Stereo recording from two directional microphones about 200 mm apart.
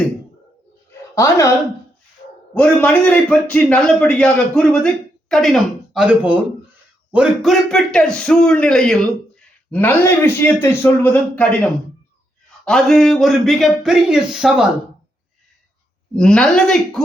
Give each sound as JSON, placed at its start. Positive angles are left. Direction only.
{"t": 0.9, "sound": "a sound", "side_deg": 15}
{"t": 2.2, "sound": "dog", "side_deg": 50}
{"t": 2.6, "sound": "a man's voice", "side_deg": 5}
{"t": 12.6, "sound": "a man's voice", "side_deg": 5}
{"t": 16.1, "sound": "a man's voice", "side_deg": 5}